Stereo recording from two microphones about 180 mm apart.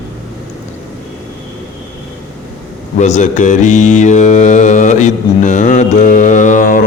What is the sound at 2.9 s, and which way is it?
Mantra, 40° left (ahead or behind).